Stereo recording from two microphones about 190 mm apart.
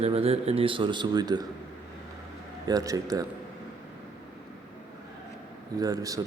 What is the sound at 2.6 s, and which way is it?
Speech, 20° right (ahead or behind).